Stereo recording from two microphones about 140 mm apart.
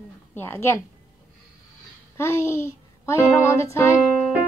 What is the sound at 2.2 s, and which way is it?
A woman's voice, 20° left (ahead or behind).